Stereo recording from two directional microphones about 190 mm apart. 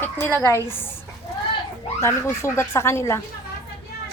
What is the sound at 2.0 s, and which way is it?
A woman's voice, 15° left (ahead or behind).